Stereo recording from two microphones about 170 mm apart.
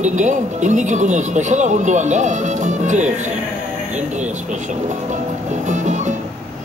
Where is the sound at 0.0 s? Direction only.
45° right (ahead or behind).